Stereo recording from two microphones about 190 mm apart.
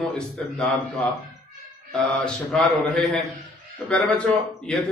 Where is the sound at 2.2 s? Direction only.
5° left (ahead or behind).